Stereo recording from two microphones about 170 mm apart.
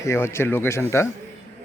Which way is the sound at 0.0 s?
15° left (ahead or behind).